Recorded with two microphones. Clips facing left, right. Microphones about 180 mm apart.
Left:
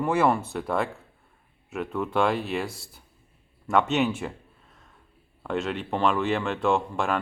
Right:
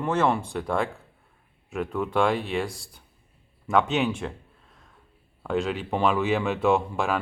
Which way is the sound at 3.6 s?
Centre (ahead or behind).